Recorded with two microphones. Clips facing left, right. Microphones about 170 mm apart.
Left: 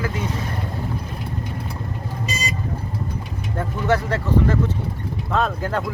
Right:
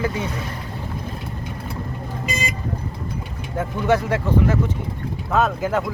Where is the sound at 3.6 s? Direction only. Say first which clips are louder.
Right 2 dB; 10° right (ahead or behind).